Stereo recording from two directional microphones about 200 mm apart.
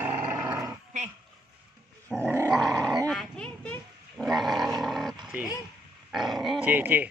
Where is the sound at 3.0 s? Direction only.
5° left (ahead or behind).